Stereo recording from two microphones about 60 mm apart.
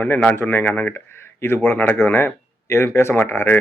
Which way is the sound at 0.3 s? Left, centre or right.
Left.